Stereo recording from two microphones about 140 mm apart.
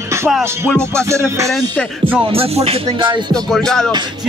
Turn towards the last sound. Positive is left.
turn(degrees=5)  # may be behind; listen again after turning